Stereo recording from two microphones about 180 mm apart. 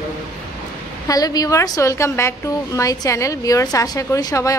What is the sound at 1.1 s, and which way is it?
A woman's voice, 20° left (ahead or behind).